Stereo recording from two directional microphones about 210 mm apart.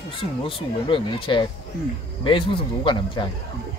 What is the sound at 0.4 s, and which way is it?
Speech, 25° left (ahead or behind).